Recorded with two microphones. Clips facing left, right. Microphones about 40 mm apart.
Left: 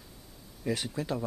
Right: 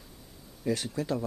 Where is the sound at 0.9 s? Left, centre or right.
Centre.